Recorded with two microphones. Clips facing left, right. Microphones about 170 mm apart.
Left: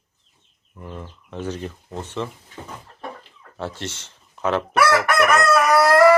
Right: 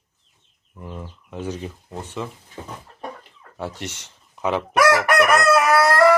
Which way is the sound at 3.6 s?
15° right (ahead or behind).